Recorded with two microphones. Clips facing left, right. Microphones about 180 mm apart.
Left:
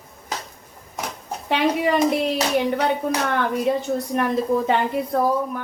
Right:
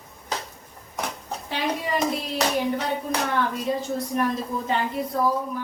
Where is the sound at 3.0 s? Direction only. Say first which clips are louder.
Left 3 dB; 65° left (ahead or behind).